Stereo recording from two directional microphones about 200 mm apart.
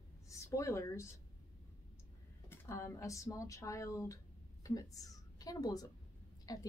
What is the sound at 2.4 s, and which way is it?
Speech, 15° left (ahead or behind).